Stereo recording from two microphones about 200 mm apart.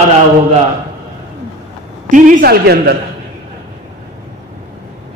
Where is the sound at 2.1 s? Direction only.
40° right (ahead or behind).